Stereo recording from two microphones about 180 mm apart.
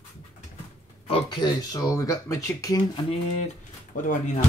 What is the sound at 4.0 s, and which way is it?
Speech, 45° left (ahead or behind).